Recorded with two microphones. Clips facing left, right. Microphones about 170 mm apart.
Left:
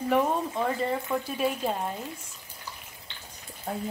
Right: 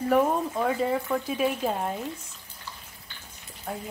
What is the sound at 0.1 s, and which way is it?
Speech, 5° right (ahead or behind).